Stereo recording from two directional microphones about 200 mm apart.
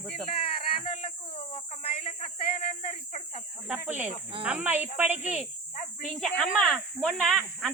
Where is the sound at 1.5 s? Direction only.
30° left (ahead or behind).